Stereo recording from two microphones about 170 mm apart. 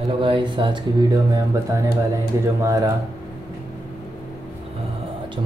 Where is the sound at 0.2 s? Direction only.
30° right (ahead or behind).